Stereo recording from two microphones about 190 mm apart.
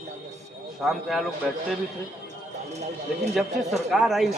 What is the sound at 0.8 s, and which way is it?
Speech, centre (ahead or behind).